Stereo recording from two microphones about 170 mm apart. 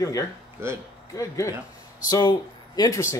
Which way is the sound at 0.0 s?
20° left (ahead or behind).